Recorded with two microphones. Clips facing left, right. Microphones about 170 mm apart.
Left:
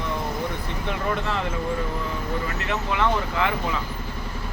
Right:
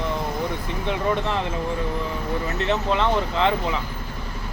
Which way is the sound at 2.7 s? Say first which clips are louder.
Right 2 dB; 25° right (ahead or behind).